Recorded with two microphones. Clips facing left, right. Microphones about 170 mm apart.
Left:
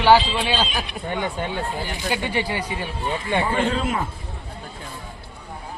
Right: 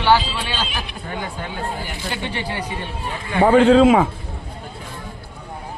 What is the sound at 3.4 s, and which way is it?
Speech, 90° right.